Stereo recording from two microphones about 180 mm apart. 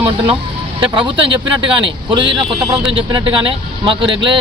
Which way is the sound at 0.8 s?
25° right (ahead or behind).